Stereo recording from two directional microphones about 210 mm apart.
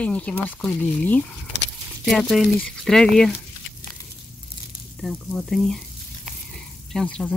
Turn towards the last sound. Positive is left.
turn(degrees=5)  # may be behind; listen again after turning